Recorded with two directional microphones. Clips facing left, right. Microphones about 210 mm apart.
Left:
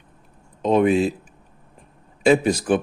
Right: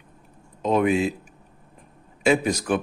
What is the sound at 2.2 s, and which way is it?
Speech, 30° left (ahead or behind).